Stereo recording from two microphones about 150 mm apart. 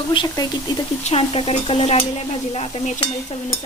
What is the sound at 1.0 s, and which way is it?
Speech, 45° left (ahead or behind).